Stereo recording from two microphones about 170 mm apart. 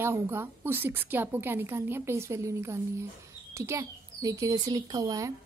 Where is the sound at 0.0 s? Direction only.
15° right (ahead or behind).